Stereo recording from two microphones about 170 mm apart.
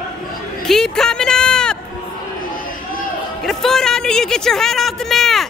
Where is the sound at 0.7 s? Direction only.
5° left (ahead or behind).